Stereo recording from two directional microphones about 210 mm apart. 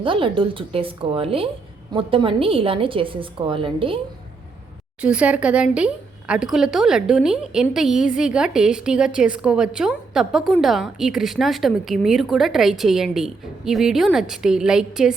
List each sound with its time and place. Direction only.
0.0 s a woman's voice: 25° right (ahead or behind)
4.9 s a woman's voice: 5° right (ahead or behind)